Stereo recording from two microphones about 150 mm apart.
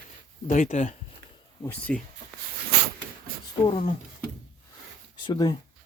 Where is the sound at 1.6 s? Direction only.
15° left (ahead or behind).